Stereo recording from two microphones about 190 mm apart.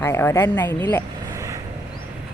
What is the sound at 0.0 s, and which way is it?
Speech, 15° left (ahead or behind).